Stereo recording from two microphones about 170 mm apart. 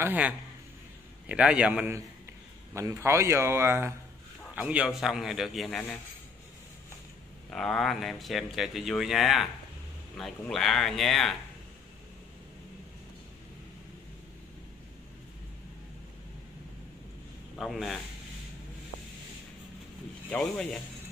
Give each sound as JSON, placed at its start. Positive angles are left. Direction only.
{"t": 0.0, "sound": "speech", "side_deg": -10}
{"t": 1.3, "sound": "speech", "side_deg": -5}
{"t": 7.5, "sound": "speech", "side_deg": 0}
{"t": 17.6, "sound": "speech", "side_deg": 0}
{"t": 20.2, "sound": "speech", "side_deg": 5}